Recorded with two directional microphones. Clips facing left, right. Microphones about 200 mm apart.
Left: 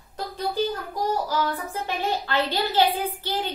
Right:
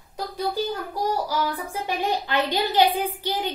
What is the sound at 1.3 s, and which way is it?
A woman's voice, 15° right (ahead or behind).